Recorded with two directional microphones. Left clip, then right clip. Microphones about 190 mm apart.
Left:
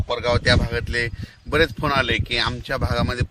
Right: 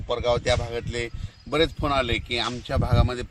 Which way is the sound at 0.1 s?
5° right (ahead or behind).